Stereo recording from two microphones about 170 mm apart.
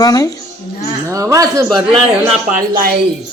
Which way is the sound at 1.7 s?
30° right (ahead or behind).